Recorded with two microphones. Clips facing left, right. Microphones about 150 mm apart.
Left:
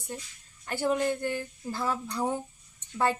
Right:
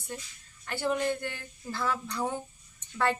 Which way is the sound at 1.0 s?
15° left (ahead or behind).